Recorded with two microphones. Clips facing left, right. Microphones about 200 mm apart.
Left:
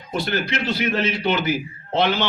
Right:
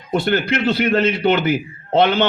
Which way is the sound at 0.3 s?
55° right (ahead or behind).